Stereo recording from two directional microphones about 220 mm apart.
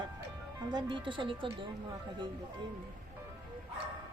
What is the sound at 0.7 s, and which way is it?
Speech, 20° right (ahead or behind).